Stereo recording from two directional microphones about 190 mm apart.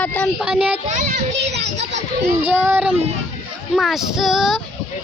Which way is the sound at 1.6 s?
65° right (ahead or behind).